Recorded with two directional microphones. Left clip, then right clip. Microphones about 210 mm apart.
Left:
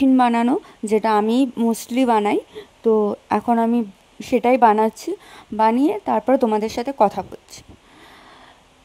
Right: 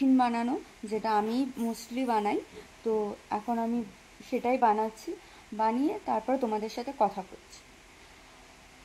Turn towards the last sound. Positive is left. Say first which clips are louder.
# left 11 dB
turn(degrees=50)  # may be behind; listen again after turning